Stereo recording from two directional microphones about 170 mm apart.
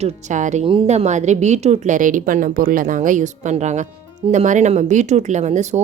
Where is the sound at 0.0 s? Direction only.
45° right (ahead or behind).